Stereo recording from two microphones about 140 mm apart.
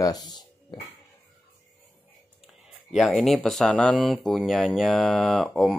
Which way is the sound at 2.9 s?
Centre (ahead or behind).